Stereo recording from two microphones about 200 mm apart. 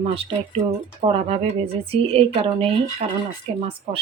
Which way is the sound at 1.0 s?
30° right (ahead or behind).